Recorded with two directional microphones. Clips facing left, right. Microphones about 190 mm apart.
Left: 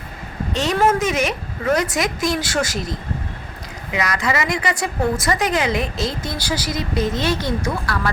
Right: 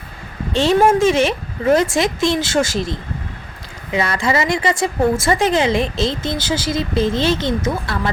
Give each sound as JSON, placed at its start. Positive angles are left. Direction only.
{"t": 0.5, "sound": "speech", "side_deg": -30}